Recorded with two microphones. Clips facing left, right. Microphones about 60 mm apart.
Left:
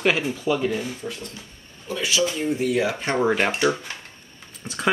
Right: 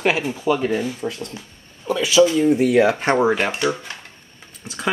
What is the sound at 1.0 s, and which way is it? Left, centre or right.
Speech, right.